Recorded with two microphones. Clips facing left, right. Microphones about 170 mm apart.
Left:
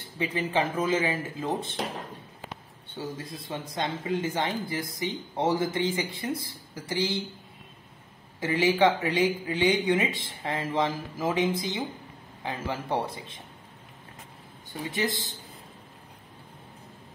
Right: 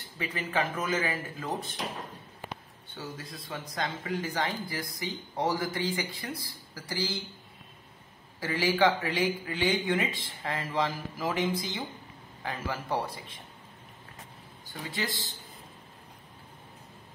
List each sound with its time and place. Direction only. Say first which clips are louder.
0.2 s speech: left 4 dB; 30° left (ahead or behind)
3.0 s speech: left 5 dB; 30° left (ahead or behind)
8.4 s speech: left 3 dB; 20° left (ahead or behind)
14.7 s speech: left 5 dB; 20° left (ahead or behind)